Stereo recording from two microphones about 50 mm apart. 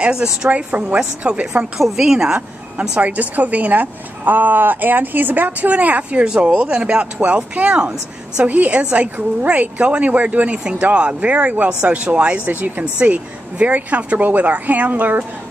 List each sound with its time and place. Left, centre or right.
0.0 s a woman's voice: centre
0.5 s a woman's voice: right
1.8 s a woman's voice: centre
2.8 s a woman's voice: right